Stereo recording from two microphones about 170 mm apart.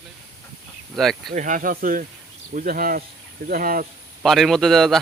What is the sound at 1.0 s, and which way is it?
Speech, centre (ahead or behind).